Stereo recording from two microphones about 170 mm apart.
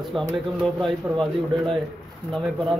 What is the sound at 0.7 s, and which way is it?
Speech, 5° left (ahead or behind).